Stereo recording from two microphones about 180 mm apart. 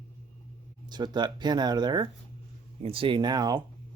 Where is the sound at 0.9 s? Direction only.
25° right (ahead or behind).